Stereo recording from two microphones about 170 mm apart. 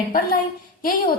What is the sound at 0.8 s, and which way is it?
Speech, 55° left (ahead or behind).